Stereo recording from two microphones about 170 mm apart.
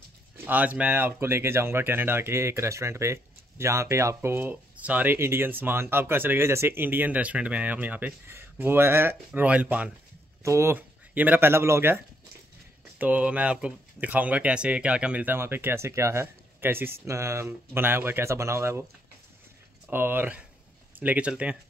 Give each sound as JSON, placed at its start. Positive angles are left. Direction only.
{"t": 0.5, "sound": "speech", "side_deg": -10}
{"t": 13.0, "sound": "speech", "side_deg": -10}
{"t": 19.9, "sound": "speech", "side_deg": -10}